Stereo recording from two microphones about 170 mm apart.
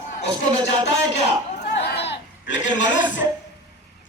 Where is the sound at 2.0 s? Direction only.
90° left.